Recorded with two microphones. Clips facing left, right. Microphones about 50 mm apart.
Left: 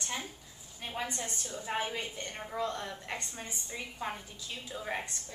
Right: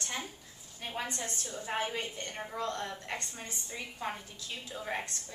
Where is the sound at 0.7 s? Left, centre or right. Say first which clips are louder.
Even; centre.